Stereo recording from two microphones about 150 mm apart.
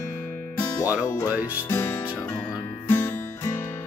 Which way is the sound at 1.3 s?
10° right (ahead or behind).